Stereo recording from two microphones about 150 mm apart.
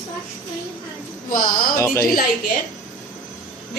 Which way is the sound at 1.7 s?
20° left (ahead or behind).